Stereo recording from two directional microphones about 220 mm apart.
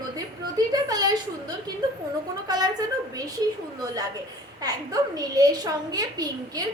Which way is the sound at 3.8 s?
15° right (ahead or behind).